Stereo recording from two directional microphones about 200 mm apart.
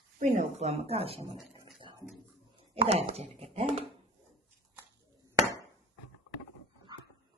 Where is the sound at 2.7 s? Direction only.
30° right (ahead or behind).